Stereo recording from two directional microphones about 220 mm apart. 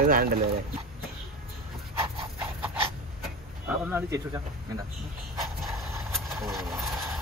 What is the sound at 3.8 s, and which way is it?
Speech, 10° right (ahead or behind).